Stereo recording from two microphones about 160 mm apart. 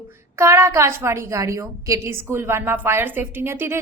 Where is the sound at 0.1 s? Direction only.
15° right (ahead or behind).